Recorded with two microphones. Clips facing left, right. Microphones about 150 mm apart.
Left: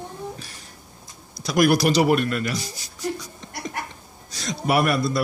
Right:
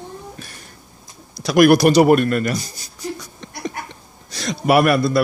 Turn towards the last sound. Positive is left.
turn(degrees=-70)  # may be behind; listen again after turning